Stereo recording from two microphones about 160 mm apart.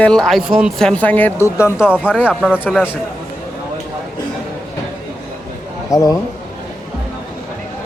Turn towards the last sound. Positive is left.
turn(degrees=20)  # may be behind; listen again after turning